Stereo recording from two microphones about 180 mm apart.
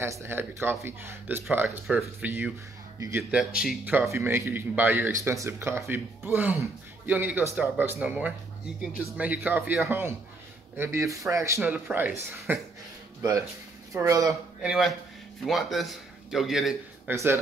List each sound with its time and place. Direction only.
0.0 s speech: 15° right (ahead or behind)
13.9 s speech: 20° right (ahead or behind)
14.6 s a man's voice: 5° right (ahead or behind)
17.1 s speech: 15° right (ahead or behind)